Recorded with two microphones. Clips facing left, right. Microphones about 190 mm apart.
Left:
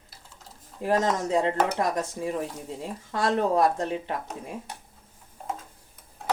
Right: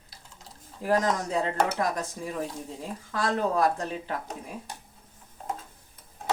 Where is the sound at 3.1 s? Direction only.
25° left (ahead or behind).